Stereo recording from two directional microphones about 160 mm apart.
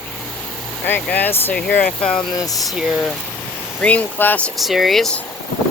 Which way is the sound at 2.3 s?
20° left (ahead or behind).